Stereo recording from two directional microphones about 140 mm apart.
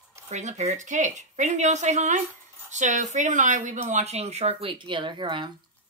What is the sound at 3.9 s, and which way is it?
Speech, 50° right (ahead or behind).